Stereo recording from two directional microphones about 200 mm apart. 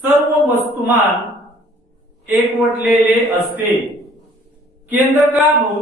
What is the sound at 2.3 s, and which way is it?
A man's voice, 5° right (ahead or behind).